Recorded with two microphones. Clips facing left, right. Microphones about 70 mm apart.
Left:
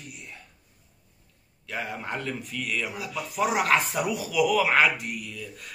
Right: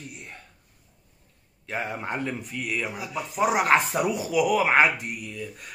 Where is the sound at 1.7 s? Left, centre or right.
Right.